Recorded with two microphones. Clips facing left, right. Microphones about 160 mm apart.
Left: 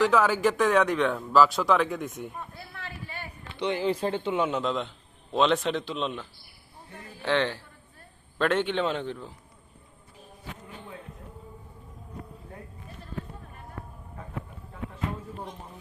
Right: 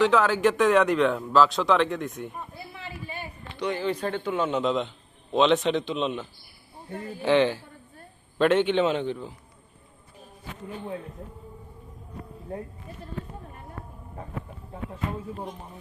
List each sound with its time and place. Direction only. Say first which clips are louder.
0.0 s speech: right 2 dB; 5° left (ahead or behind)
2.7 s a sound: right 2 dB; 20° right (ahead or behind)
3.6 s speech: left 1 dB; 20° left (ahead or behind)
4.4 s speech: right 3 dB; centre (ahead or behind)
6.9 s speech: right 9 dB; 30° right (ahead or behind)
7.3 s speech: right 5 dB; 5° right (ahead or behind)